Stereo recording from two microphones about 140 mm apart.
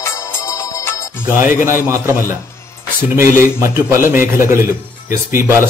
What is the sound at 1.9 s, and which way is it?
Speech, 20° right (ahead or behind).